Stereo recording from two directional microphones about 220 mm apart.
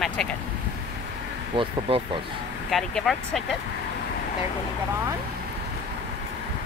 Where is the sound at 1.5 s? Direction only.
25° right (ahead or behind).